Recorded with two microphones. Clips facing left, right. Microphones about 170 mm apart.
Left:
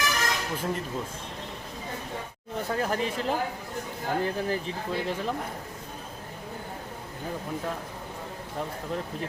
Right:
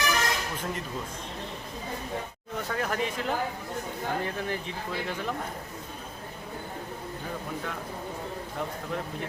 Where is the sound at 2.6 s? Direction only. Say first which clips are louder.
Left 2 dB; 30° left (ahead or behind).